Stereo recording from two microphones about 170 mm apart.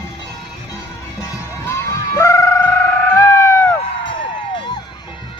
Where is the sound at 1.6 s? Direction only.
15° left (ahead or behind).